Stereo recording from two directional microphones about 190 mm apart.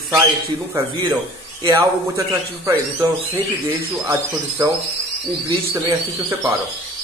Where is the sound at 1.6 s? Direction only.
20° right (ahead or behind).